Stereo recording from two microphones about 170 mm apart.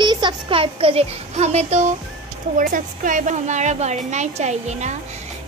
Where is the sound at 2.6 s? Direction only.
55° right (ahead or behind).